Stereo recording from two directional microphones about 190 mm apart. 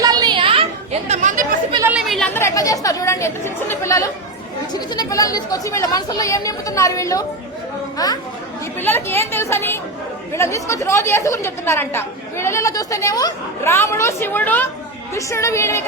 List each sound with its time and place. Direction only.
0.0 s chatter: 20° right (ahead or behind); by 1.5 s 40° right (ahead or behind)
1.9 s chatter: centre (ahead or behind)
2.4 s a woman's voice: 20° left (ahead or behind)